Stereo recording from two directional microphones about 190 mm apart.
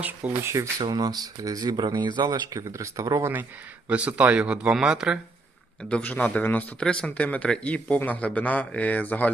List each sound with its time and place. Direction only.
0.0 s speech: 10° right (ahead or behind)
5.9 s speech: 10° left (ahead or behind)